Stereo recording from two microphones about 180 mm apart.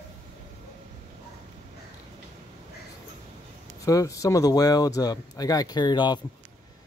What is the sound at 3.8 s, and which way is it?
Speech, 20° left (ahead or behind).